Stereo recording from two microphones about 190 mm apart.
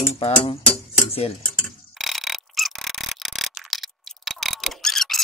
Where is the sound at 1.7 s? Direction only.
Centre (ahead or behind).